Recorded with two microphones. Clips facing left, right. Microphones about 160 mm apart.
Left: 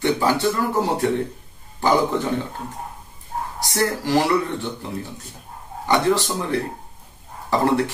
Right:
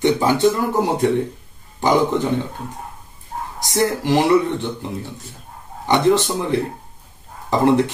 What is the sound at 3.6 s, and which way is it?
Speech, 20° right (ahead or behind).